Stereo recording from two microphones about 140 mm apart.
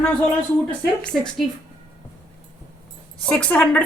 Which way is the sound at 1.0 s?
5° left (ahead or behind).